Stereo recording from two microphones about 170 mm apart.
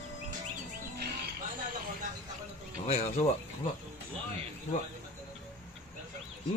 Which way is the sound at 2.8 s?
40° left (ahead or behind).